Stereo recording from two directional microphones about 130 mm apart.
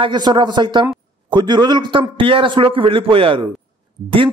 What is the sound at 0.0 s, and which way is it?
Speech, 35° right (ahead or behind).